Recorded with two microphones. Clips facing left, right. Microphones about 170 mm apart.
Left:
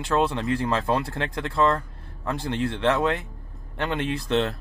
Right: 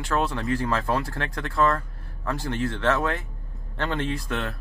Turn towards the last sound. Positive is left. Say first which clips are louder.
# left 6 dB
turn(degrees=25)  # may be behind; listen again after turning